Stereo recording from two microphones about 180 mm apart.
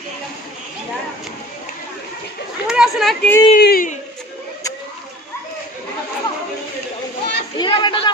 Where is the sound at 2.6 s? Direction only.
5° right (ahead or behind).